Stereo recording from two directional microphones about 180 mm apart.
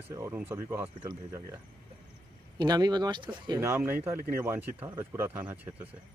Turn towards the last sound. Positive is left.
turn(degrees=-10)  # may be behind; listen again after turning